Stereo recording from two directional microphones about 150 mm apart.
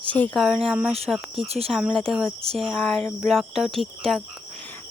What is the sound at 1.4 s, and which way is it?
Speech, 40° right (ahead or behind).